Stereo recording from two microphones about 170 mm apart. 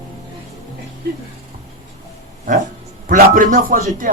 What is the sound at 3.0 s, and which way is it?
Speech, 50° right (ahead or behind).